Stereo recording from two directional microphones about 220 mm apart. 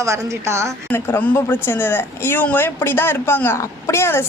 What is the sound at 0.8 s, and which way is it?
A woman's voice, 10° left (ahead or behind).